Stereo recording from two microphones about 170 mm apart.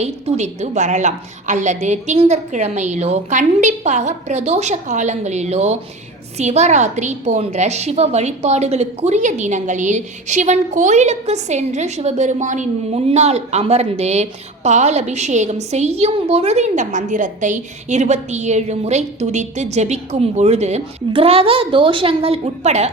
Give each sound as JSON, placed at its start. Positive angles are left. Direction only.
{"t": 0.0, "sound": "a woman's voice", "side_deg": -40}